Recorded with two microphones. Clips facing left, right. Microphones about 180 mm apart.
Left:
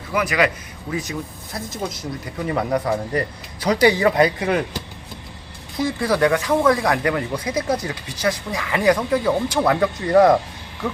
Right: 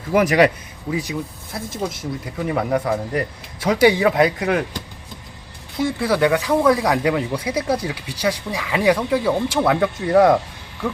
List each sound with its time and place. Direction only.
0.1 s a man's voice: 45° right (ahead or behind)
0.9 s speech: 10° right (ahead or behind)
5.7 s speech: 5° right (ahead or behind)